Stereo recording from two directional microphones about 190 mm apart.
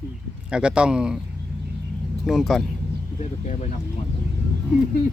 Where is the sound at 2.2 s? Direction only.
Centre (ahead or behind).